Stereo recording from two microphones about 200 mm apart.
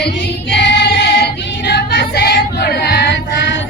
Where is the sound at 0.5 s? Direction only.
65° left (ahead or behind).